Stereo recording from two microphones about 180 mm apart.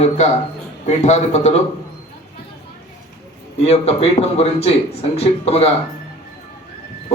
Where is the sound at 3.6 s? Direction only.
35° left (ahead or behind).